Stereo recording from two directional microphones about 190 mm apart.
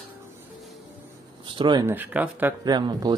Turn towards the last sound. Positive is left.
turn(degrees=-20)  # may be behind; listen again after turning